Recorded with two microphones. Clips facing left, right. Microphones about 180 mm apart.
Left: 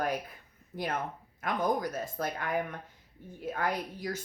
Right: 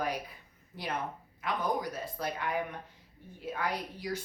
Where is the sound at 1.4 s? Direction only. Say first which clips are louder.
Left 3 dB; 45° left (ahead or behind).